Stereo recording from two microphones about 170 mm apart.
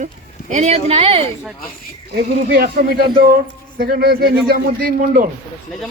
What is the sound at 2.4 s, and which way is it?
Speech, 65° right (ahead or behind).